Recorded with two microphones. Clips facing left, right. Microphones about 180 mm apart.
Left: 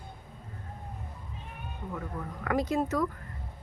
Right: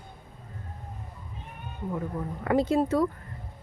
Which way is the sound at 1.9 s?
25° right (ahead or behind).